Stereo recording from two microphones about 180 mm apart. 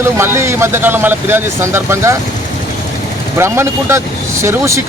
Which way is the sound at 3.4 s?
15° right (ahead or behind).